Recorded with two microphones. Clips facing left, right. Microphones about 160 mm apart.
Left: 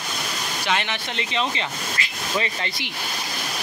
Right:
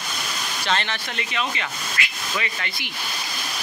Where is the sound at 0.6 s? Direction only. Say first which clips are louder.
Even; 15° left (ahead or behind); by 2.7 s 30° left (ahead or behind).